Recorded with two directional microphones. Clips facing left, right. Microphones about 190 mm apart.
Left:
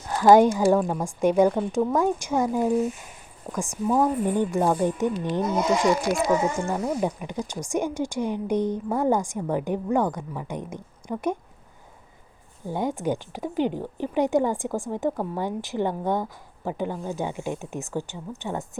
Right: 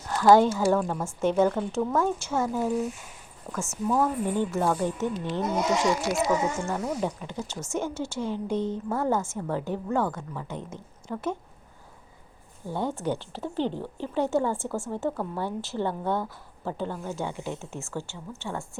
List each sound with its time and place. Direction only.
0.1 s speech: 15° left (ahead or behind)
6.1 s speech: 50° left (ahead or behind)
7.0 s speech: 15° left (ahead or behind)
12.6 s speech: 15° left (ahead or behind)